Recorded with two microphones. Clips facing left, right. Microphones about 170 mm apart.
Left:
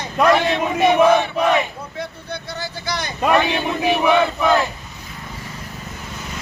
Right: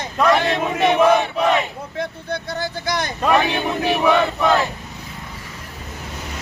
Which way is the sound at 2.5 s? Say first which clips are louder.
Right 3 dB; 50° right (ahead or behind).